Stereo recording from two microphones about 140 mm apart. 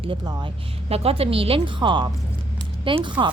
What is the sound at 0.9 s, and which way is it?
A woman's voice, 45° right (ahead or behind).